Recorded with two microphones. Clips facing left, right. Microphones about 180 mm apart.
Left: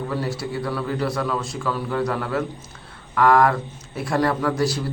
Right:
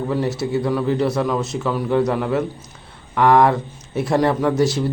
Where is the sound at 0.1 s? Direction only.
20° right (ahead or behind).